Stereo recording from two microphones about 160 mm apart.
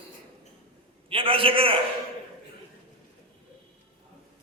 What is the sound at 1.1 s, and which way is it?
Speech, 35° right (ahead or behind).